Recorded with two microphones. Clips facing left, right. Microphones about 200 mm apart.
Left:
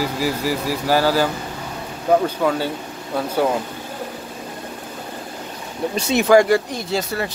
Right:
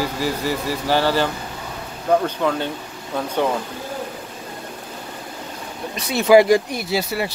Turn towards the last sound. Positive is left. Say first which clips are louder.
# even
turn(degrees=-10)  # may be behind; listen again after turning